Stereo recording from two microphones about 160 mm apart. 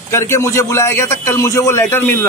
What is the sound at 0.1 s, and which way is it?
A man's voice, 15° left (ahead or behind).